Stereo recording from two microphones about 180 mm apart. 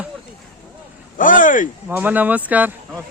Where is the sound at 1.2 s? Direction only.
50° left (ahead or behind).